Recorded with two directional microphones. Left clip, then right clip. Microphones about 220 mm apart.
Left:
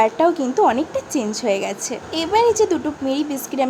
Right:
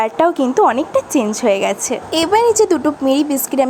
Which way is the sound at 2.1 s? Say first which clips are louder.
Right 4 dB; 25° right (ahead or behind).